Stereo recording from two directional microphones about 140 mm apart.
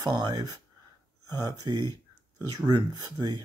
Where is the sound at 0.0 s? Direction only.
30° right (ahead or behind).